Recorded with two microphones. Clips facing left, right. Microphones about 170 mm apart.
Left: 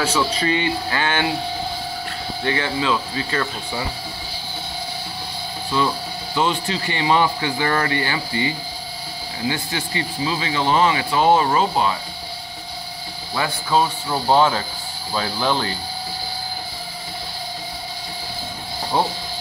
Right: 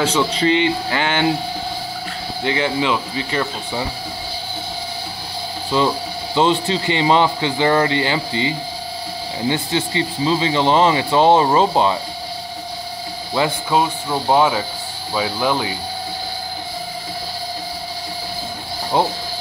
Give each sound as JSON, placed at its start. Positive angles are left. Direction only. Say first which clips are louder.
{"t": 0.0, "sound": "a man's voice", "louder": "right 3 dB", "side_deg": -20}
{"t": 2.4, "sound": "a man's voice", "louder": "right 3 dB", "side_deg": -20}
{"t": 6.3, "sound": "a man's voice", "louder": "right 5 dB", "side_deg": -25}
{"t": 13.3, "sound": "speech", "louder": "right 3 dB", "side_deg": -15}